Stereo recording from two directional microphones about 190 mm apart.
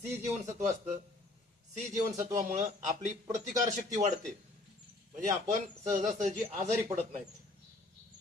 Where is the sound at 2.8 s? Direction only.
40° right (ahead or behind).